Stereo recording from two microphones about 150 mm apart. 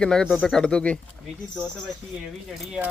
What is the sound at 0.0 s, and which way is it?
Speech, 5° left (ahead or behind).